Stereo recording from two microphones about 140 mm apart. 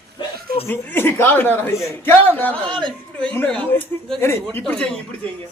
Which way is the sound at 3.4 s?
5° left (ahead or behind).